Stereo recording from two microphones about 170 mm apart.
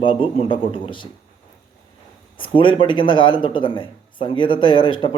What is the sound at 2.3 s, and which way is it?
Speech, 30° left (ahead or behind).